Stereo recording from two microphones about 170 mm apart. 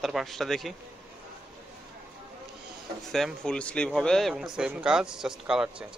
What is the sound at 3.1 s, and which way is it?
Speech, 5° left (ahead or behind).